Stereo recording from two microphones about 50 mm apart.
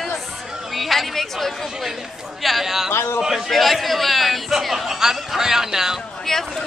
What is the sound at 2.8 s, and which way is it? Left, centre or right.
Speech, left.